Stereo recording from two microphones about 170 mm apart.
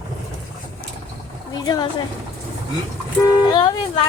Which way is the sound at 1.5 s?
25° left (ahead or behind).